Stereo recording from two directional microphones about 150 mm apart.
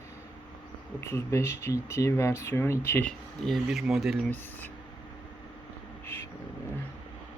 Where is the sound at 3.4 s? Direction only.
Centre (ahead or behind).